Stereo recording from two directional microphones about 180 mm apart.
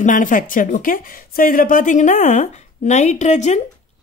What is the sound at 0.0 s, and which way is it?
Speech, 45° left (ahead or behind).